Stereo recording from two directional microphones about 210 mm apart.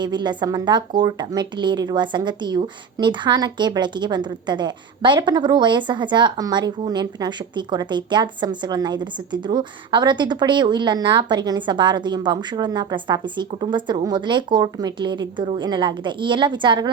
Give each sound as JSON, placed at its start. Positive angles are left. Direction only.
{"t": 0.0, "sound": "a woman's voice", "side_deg": -20}